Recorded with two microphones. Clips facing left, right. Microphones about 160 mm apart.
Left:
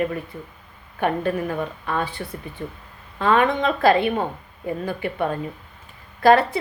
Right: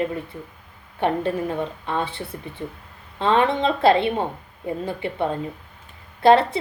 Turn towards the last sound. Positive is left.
turn(degrees=-25)  # may be behind; listen again after turning